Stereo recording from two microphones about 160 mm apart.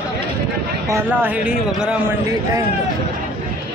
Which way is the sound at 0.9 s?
10° right (ahead or behind).